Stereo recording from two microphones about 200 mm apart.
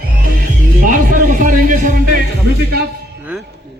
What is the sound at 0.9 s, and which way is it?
Music, 40° right (ahead or behind).